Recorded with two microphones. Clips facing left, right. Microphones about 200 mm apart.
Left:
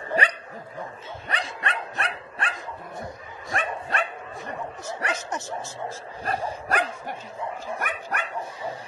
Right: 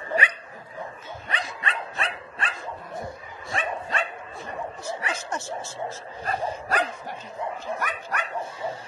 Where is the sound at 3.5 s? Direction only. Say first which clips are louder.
Even; 60° left (ahead or behind).